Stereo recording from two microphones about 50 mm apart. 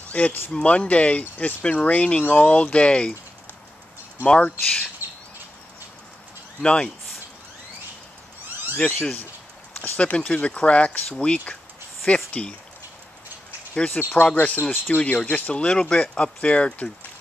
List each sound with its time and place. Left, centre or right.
0.1 s speech: left
5.0 s bird: right
6.6 s speech: left
8.7 s speech: left
13.7 s speech: left
14.1 s speech: left
15.5 s speech: left